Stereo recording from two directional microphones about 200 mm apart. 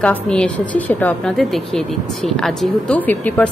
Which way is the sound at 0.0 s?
5° left (ahead or behind).